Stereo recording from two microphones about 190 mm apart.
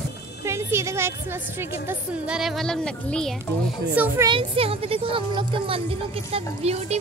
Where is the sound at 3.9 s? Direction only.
10° right (ahead or behind).